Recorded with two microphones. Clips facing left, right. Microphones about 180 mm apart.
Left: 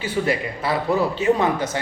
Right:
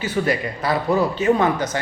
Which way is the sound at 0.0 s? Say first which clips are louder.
Right 1 dB; 25° left (ahead or behind).